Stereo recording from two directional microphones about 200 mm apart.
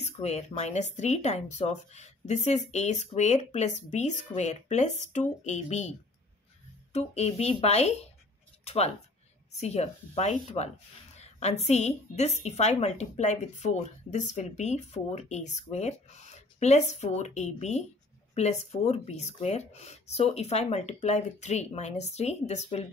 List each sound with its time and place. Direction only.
0.0 s a woman's voice: 35° left (ahead or behind)